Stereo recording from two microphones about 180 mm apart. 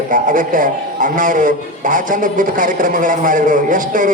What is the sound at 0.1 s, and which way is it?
A man's voice, 45° right (ahead or behind).